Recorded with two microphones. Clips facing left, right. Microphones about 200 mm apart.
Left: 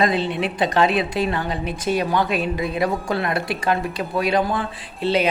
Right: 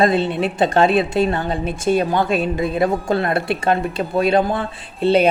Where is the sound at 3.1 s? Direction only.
25° right (ahead or behind).